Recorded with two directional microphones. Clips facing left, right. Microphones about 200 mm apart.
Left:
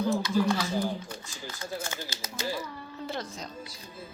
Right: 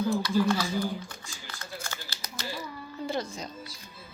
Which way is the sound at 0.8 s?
25° left (ahead or behind).